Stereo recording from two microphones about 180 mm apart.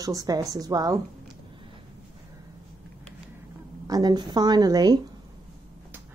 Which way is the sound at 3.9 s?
25° right (ahead or behind).